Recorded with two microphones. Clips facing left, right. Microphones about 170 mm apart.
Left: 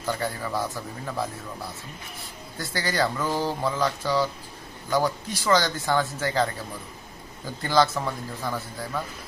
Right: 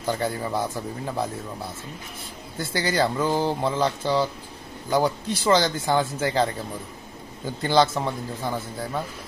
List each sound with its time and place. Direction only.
0.0 s speech: 30° right (ahead or behind)
7.6 s speech: 25° right (ahead or behind)